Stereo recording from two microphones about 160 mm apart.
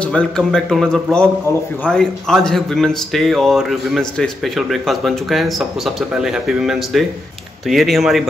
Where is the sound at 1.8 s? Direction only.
5° left (ahead or behind).